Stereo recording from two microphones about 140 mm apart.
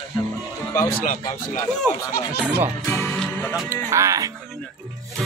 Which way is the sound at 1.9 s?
25° left (ahead or behind).